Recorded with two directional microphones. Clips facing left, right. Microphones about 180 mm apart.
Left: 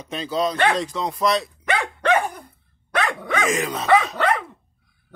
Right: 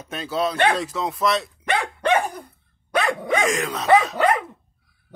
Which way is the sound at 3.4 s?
Centre (ahead or behind).